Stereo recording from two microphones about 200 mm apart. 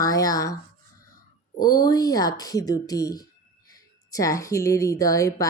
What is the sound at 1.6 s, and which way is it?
Speech, 20° left (ahead or behind).